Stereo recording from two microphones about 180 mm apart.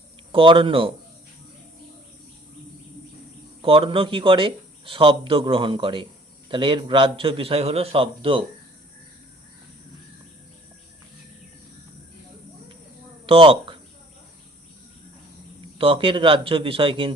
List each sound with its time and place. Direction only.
0.3 s speech: 30° right (ahead or behind)
3.6 s speech: 30° right (ahead or behind)
13.2 s speech: 30° right (ahead or behind)
15.8 s speech: 30° right (ahead or behind)